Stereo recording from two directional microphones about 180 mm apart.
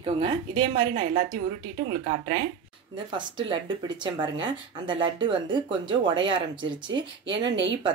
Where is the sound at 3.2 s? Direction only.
25° right (ahead or behind).